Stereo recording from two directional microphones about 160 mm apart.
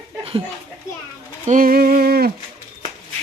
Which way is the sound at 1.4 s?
55° right (ahead or behind).